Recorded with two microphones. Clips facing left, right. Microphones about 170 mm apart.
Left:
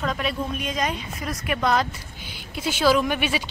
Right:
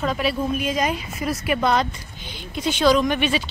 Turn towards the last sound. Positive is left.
turn(degrees=10)  # may be behind; listen again after turning